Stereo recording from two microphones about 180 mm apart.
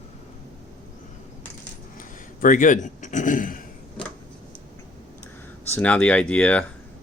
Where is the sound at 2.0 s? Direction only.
45° left (ahead or behind).